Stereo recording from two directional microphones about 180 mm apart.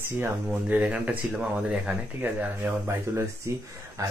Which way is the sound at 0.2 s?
10° right (ahead or behind).